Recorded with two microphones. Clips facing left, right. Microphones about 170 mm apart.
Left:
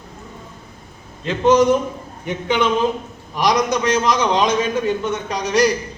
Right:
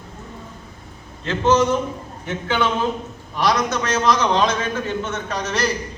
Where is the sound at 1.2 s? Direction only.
15° left (ahead or behind).